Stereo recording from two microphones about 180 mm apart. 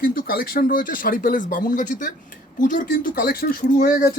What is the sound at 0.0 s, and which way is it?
Speech, 50° left (ahead or behind).